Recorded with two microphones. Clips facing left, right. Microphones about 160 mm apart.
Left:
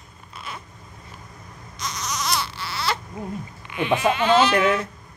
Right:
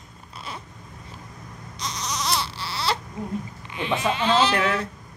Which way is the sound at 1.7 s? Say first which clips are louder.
Left 1 dB; 30° right (ahead or behind).